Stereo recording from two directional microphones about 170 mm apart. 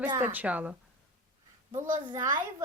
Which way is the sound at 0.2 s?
10° right (ahead or behind).